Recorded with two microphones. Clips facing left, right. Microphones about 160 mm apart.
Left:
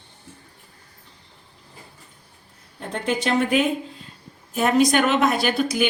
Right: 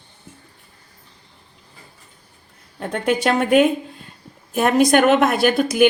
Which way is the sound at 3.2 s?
55° right (ahead or behind).